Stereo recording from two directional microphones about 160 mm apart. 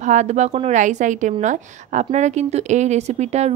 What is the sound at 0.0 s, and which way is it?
Speech, 50° right (ahead or behind).